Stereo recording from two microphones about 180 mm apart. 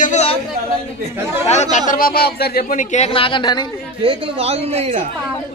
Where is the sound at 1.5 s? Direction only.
40° left (ahead or behind); by 2.6 s 60° left (ahead or behind).